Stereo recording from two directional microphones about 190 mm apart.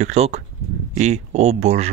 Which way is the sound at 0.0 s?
35° right (ahead or behind).